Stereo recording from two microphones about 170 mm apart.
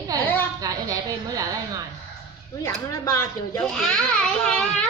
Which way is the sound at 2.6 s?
20° left (ahead or behind).